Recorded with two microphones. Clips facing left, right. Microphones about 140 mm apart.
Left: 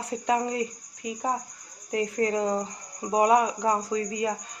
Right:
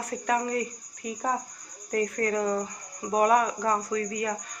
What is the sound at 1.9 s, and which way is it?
Speech, 20° left (ahead or behind).